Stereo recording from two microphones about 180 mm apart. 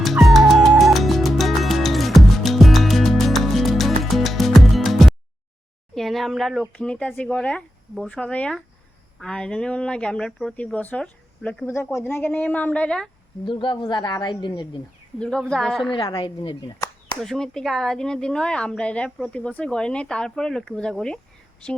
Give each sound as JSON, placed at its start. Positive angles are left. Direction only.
{"t": 0.0, "sound": "music", "side_deg": 0}
{"t": 5.9, "sound": "speech", "side_deg": 0}
{"t": 13.4, "sound": "a woman's voice", "side_deg": 30}
{"t": 15.2, "sound": "speech", "side_deg": 5}
{"t": 15.9, "sound": "a woman's voice", "side_deg": 20}
{"t": 17.2, "sound": "speech", "side_deg": 0}